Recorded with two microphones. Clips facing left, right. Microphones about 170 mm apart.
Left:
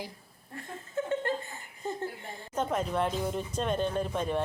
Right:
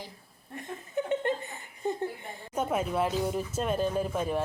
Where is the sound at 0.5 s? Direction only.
20° right (ahead or behind).